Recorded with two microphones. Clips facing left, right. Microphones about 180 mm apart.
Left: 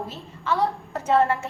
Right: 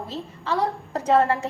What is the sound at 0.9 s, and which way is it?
Speech, 35° right (ahead or behind).